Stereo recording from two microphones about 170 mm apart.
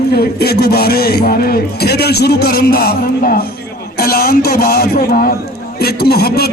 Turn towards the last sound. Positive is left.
turn(degrees=65)  # may be behind; listen again after turning